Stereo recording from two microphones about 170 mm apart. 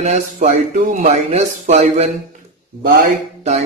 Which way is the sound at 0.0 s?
45° right (ahead or behind).